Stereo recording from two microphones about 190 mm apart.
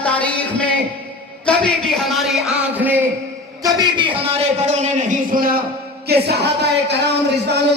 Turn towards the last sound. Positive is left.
turn(degrees=-65)  # may be behind; listen again after turning